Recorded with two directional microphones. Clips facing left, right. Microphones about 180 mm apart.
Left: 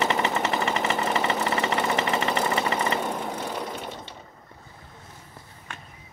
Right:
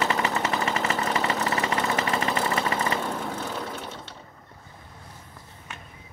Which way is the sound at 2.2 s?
Centre (ahead or behind).